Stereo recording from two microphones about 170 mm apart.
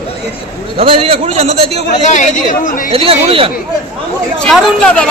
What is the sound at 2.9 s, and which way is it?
Speech, 35° right (ahead or behind).